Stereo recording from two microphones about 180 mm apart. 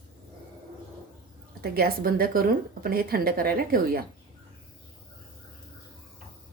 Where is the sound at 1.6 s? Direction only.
55° right (ahead or behind).